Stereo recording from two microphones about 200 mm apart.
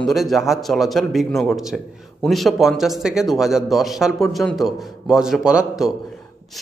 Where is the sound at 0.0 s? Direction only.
Centre (ahead or behind).